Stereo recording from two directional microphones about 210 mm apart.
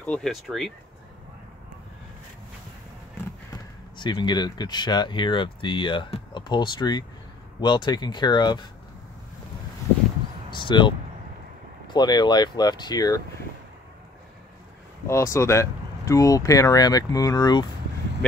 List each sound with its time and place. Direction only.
0.0 s speech: 5° left (ahead or behind)
4.0 s speech: 20° left (ahead or behind)
10.5 s speech: 20° left (ahead or behind)
15.0 s speech: 15° left (ahead or behind)